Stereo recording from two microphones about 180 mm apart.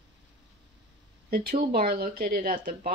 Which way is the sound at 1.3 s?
55° right (ahead or behind).